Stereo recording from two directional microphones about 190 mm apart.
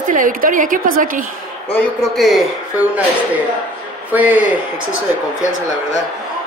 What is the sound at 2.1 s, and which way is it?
Speech, centre (ahead or behind).